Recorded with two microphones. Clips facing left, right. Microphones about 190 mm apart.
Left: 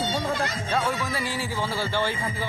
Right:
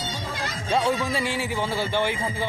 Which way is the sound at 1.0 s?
25° right (ahead or behind).